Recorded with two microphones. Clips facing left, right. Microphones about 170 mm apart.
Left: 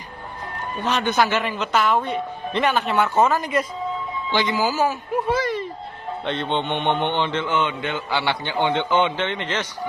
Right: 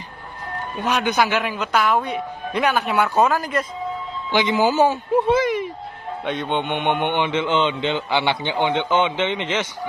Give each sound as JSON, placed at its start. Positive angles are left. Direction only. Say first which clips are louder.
{"t": 0.8, "sound": "speech", "louder": "right 1 dB", "side_deg": -15}
{"t": 4.3, "sound": "speech", "louder": "right 4 dB", "side_deg": -20}
{"t": 6.2, "sound": "speech", "louder": "right 1 dB", "side_deg": -10}